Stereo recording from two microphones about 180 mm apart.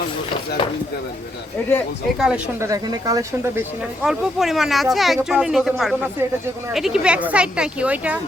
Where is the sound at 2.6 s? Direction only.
20° right (ahead or behind).